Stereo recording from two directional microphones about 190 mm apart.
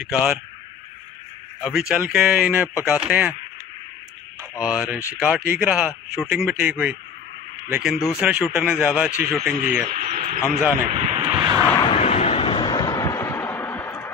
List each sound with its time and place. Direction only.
0.0 s a man's voice: 5° right (ahead or behind)
1.6 s a man's voice: centre (ahead or behind)
4.4 s speech: 5° right (ahead or behind)
8.0 s a man's voice: 5° right (ahead or behind)
9.8 s radio: 45° right (ahead or behind)
10.9 s vehicle: 35° right (ahead or behind)
11.8 s a sound: 30° left (ahead or behind); by 14.1 s 15° left (ahead or behind)